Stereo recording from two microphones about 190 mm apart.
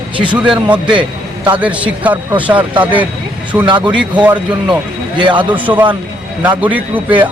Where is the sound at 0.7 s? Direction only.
25° right (ahead or behind).